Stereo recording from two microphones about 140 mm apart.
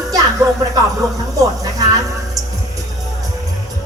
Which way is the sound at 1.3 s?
25° right (ahead or behind).